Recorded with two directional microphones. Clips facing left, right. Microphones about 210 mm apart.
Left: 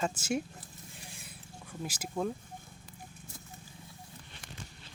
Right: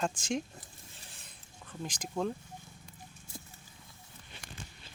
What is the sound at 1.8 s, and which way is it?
Speech, 5° left (ahead or behind).